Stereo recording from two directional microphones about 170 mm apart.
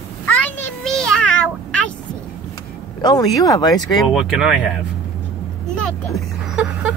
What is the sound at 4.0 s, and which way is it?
Speech, centre (ahead or behind).